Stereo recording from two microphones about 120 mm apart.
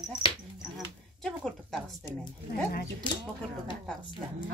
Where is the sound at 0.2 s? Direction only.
45° left (ahead or behind).